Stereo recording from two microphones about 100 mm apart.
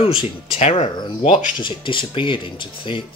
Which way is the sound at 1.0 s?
50° left (ahead or behind).